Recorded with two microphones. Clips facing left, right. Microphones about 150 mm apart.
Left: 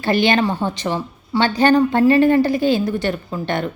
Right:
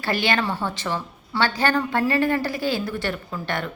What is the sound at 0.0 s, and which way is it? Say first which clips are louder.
A woman's voice: left 7 dB; 20° left (ahead or behind).